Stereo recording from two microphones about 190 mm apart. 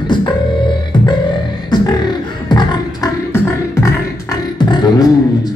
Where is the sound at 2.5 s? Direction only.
20° left (ahead or behind).